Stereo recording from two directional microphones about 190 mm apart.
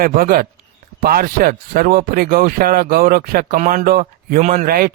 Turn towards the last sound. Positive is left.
turn(degrees=-50)  # may be behind; listen again after turning